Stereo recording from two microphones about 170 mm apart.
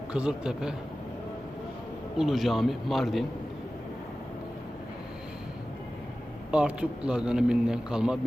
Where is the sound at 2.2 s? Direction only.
Centre (ahead or behind).